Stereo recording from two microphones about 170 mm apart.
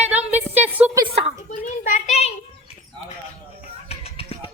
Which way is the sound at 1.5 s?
50° left (ahead or behind).